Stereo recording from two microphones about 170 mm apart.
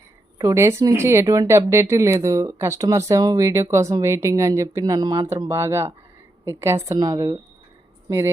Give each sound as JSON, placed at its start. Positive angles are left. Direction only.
{"t": 0.3, "sound": "speech", "side_deg": -15}